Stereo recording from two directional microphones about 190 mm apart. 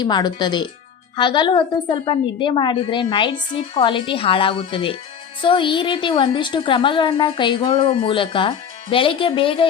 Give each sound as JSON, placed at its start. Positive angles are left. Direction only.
{"t": 0.0, "sound": "a woman's voice", "side_deg": 20}